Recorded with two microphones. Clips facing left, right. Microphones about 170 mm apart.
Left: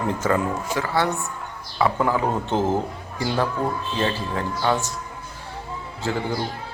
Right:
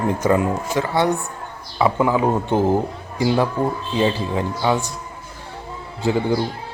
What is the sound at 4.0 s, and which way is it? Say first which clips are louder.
Speech: right 7 dB; 10° right (ahead or behind).